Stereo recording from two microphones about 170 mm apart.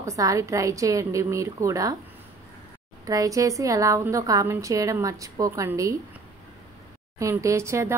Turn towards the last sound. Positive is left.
turn(degrees=-15)  # may be behind; listen again after turning